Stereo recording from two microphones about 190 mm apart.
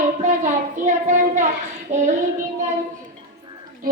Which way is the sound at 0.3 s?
40° right (ahead or behind).